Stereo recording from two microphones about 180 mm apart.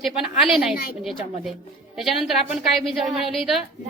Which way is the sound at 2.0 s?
Centre (ahead or behind).